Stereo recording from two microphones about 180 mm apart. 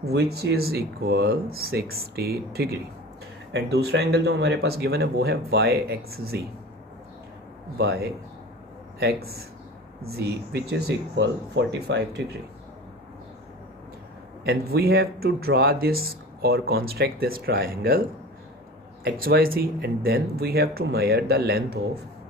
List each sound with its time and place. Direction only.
0.1 s speech: 60° right (ahead or behind)
7.7 s speech: 60° right (ahead or behind)
14.4 s speech: 60° right (ahead or behind)
19.0 s speech: 55° right (ahead or behind)